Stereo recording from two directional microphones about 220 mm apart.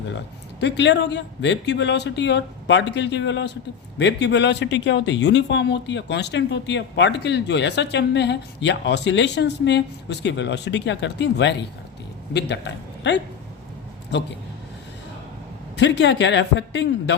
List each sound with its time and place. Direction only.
0.6 s speech: 55° left (ahead or behind)
15.7 s speech: 55° left (ahead or behind)